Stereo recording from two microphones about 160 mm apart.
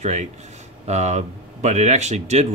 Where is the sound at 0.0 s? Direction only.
45° right (ahead or behind).